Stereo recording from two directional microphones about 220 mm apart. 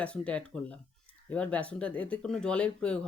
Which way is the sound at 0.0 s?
5° left (ahead or behind).